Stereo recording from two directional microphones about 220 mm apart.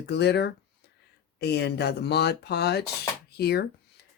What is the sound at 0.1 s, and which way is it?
Speech, 50° left (ahead or behind).